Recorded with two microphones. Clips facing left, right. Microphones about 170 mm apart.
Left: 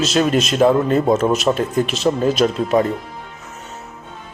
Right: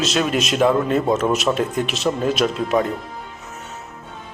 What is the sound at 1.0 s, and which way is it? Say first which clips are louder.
Speech: left 3 dB; 30° left (ahead or behind).